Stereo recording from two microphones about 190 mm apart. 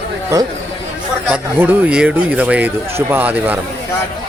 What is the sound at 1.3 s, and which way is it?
Speech, 10° right (ahead or behind).